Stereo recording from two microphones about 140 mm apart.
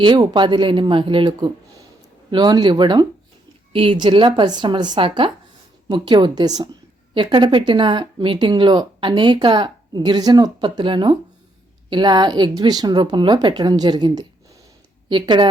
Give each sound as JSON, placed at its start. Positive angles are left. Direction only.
{"t": 0.0, "sound": "speech", "side_deg": -35}